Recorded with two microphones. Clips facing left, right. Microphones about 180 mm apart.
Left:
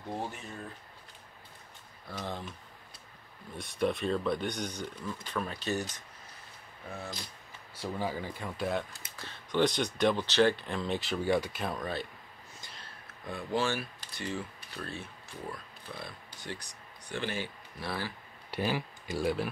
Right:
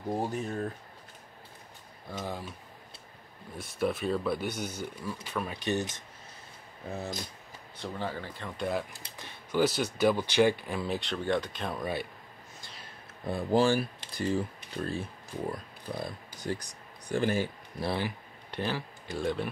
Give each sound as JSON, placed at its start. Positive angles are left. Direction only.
{"t": 0.1, "sound": "speech", "side_deg": -40}
{"t": 2.0, "sound": "speech", "side_deg": -10}
{"t": 3.5, "sound": "speech", "side_deg": 0}
{"t": 5.7, "sound": "speech", "side_deg": -25}
{"t": 7.7, "sound": "speech", "side_deg": 10}
{"t": 9.0, "sound": "speech", "side_deg": -20}
{"t": 11.7, "sound": "speech", "side_deg": -10}
{"t": 13.2, "sound": "speech", "side_deg": -35}
{"t": 17.8, "sound": "speech", "side_deg": -20}
{"t": 18.5, "sound": "speech", "side_deg": 10}